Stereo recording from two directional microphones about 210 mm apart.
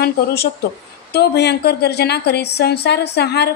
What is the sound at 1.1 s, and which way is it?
A woman's voice, 50° left (ahead or behind).